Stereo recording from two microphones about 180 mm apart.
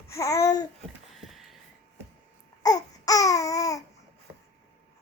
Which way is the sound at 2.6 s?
20° left (ahead or behind).